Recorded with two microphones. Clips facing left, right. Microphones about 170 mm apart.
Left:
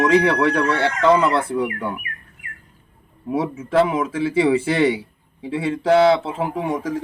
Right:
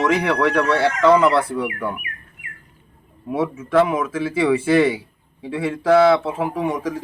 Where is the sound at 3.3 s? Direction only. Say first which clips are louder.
Right 1 dB; 25° left (ahead or behind).